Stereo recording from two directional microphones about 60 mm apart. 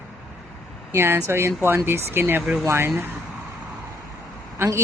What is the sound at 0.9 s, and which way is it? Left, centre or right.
Speech, right.